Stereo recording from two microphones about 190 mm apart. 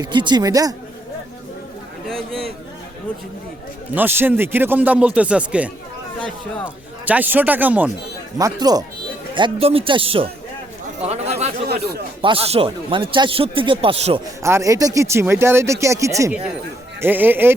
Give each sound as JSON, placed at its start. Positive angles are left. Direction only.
{"t": 0.0, "sound": "speech", "side_deg": -25}
{"t": 2.0, "sound": "speech", "side_deg": 0}
{"t": 3.9, "sound": "speech", "side_deg": -10}
{"t": 7.0, "sound": "speech", "side_deg": -10}
{"t": 8.4, "sound": "speech", "side_deg": -20}
{"t": 11.7, "sound": "speech", "side_deg": -55}
{"t": 12.2, "sound": "speech", "side_deg": -30}
{"t": 14.4, "sound": "speech", "side_deg": -15}